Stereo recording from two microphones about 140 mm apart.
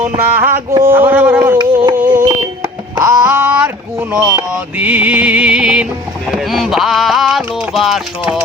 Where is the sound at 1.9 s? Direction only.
15° right (ahead or behind).